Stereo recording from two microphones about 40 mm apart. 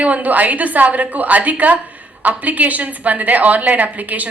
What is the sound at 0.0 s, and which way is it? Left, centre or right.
A woman's voice, right.